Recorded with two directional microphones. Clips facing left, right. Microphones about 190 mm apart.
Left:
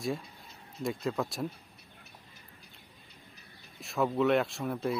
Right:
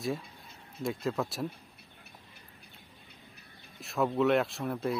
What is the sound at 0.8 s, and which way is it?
Speech, centre (ahead or behind).